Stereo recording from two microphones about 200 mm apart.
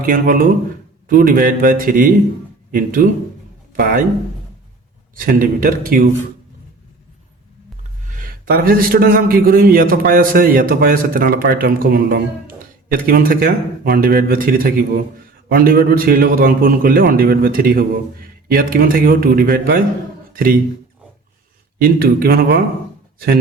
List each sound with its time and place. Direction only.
0.0 s a man's voice: 45° right (ahead or behind)
5.1 s a man's voice: 45° right (ahead or behind)
8.1 s a man's voice: 45° right (ahead or behind)
21.8 s a man's voice: 50° right (ahead or behind)